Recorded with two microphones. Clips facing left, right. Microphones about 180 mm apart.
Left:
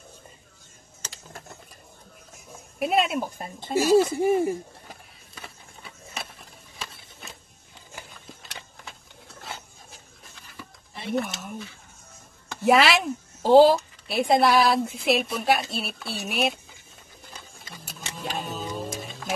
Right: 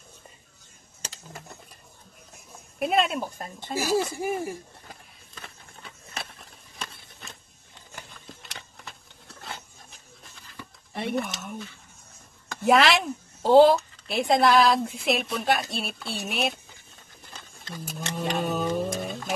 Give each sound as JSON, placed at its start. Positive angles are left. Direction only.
{"t": 2.3, "sound": "a sound", "side_deg": 0}
{"t": 3.7, "sound": "speech", "side_deg": 0}
{"t": 4.1, "sound": "speech", "side_deg": 20}
{"t": 5.3, "sound": "run", "side_deg": 10}
{"t": 6.8, "sound": "a sound", "side_deg": 5}
{"t": 11.1, "sound": "speech", "side_deg": 0}
{"t": 17.3, "sound": "a sound", "side_deg": 5}
{"t": 18.4, "sound": "music", "side_deg": -60}
{"t": 18.9, "sound": "music", "side_deg": 0}